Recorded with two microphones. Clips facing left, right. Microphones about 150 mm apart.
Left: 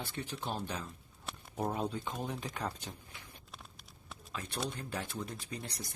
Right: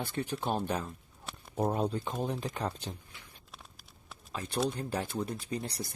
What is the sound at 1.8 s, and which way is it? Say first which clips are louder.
Speech: right 5 dB; 35° right (ahead or behind).